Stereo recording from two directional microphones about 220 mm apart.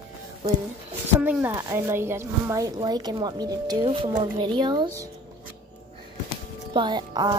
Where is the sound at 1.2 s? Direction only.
5° right (ahead or behind).